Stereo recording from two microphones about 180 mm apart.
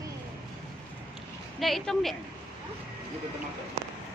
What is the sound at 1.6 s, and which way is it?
Speech, centre (ahead or behind).